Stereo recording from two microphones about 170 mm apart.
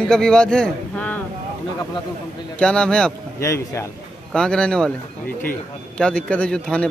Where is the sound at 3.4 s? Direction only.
15° left (ahead or behind).